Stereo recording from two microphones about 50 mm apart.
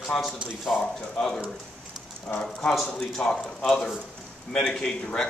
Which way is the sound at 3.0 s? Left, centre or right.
Centre.